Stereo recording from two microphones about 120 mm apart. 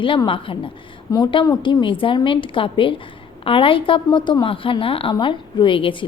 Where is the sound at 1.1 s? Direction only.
35° left (ahead or behind).